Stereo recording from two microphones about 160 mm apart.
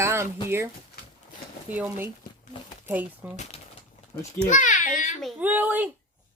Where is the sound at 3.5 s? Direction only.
35° left (ahead or behind).